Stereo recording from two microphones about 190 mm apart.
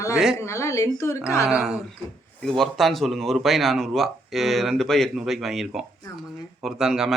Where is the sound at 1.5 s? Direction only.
Centre (ahead or behind).